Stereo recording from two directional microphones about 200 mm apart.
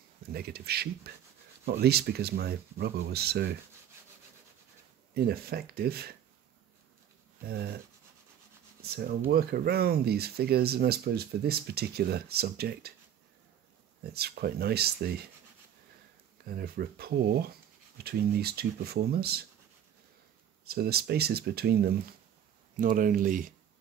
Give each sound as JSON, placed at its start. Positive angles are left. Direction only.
{"t": 0.3, "sound": "speech", "side_deg": -50}
{"t": 5.1, "sound": "speech", "side_deg": -50}
{"t": 7.4, "sound": "speech", "side_deg": -50}
{"t": 8.8, "sound": "speech", "side_deg": -50}
{"t": 14.0, "sound": "speech", "side_deg": -50}
{"t": 16.5, "sound": "speech", "side_deg": -50}
{"t": 20.6, "sound": "speech", "side_deg": -50}
{"t": 22.8, "sound": "speech", "side_deg": -40}